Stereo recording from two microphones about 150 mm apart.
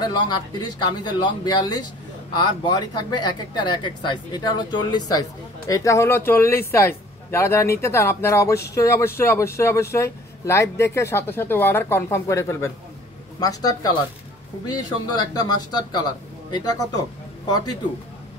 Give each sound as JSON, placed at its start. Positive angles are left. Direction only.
{"t": 0.0, "sound": "a man's voice", "side_deg": 30}